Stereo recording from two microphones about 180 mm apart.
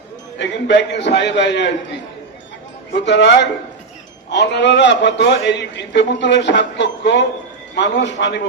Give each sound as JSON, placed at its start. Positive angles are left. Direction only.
{"t": 0.3, "sound": "a man's voice", "side_deg": 75}
{"t": 2.9, "sound": "a man's voice", "side_deg": 75}